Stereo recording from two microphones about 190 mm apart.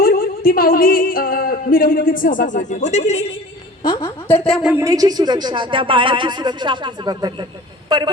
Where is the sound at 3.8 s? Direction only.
25° left (ahead or behind).